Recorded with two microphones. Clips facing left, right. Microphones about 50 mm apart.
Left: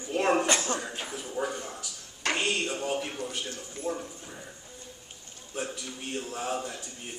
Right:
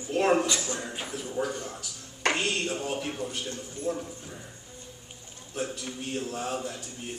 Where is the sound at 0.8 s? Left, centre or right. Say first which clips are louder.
Right 1 dB; centre.